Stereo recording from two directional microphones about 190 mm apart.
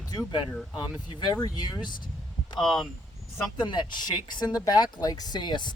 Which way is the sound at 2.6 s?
Centre (ahead or behind).